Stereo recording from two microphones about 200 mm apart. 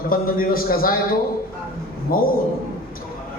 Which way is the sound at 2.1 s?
45° left (ahead or behind).